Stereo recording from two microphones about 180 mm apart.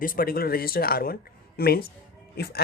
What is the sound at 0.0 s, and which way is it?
Speech, 50° left (ahead or behind).